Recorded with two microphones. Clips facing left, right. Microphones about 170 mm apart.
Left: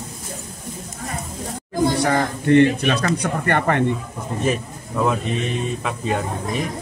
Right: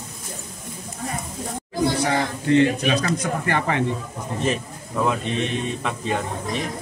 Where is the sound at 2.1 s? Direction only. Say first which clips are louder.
Left 3 dB; 55° left (ahead or behind).